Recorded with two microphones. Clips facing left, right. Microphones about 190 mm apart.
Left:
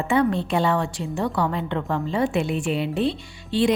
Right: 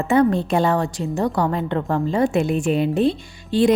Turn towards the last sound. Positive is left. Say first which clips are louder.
# right 4 dB
turn(degrees=-45)  # may be behind; listen again after turning